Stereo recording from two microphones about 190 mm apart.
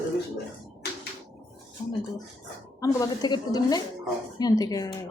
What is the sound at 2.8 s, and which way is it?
A woman's voice, 20° left (ahead or behind).